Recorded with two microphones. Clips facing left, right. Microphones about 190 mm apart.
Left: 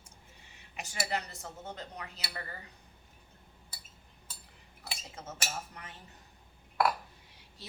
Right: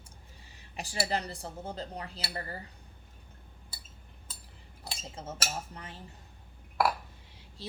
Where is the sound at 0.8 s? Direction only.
35° right (ahead or behind).